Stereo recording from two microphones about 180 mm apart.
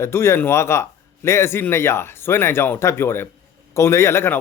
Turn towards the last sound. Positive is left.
turn(degrees=15)  # may be behind; listen again after turning